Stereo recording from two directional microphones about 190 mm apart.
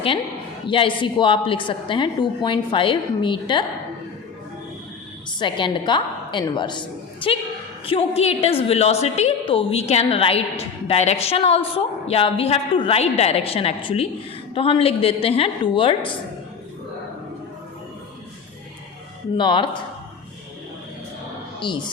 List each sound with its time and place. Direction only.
0.7 s a woman's voice: 25° left (ahead or behind)
5.4 s a woman's voice: 25° left (ahead or behind)
19.4 s a woman's voice: 25° left (ahead or behind)
21.6 s a woman's voice: 25° left (ahead or behind)